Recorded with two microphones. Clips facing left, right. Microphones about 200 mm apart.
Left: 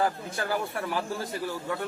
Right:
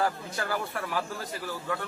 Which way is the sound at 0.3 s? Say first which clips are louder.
Left 2 dB; 25° left (ahead or behind).